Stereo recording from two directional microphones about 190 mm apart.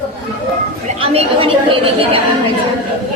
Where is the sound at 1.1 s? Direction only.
30° right (ahead or behind).